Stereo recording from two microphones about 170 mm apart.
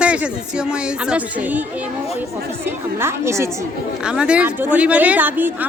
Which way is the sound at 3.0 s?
15° right (ahead or behind).